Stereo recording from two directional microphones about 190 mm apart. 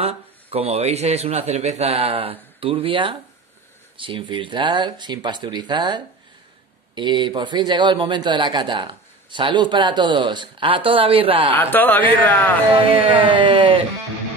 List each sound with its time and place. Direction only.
0.0 s a man's voice: 30° right (ahead or behind)
11.5 s speech: 10° left (ahead or behind)
12.7 s speech: 25° right (ahead or behind)